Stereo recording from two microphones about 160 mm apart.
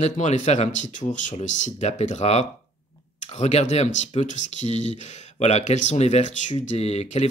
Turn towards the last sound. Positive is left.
turn(degrees=45)  # may be behind; listen again after turning